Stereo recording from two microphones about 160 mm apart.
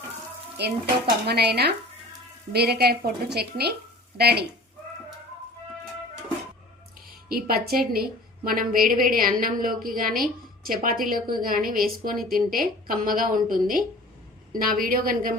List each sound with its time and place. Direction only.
0.6 s stir: 90° right
2.5 s a woman's voice: 85° right
7.3 s a woman's voice: 70° right (ahead or behind)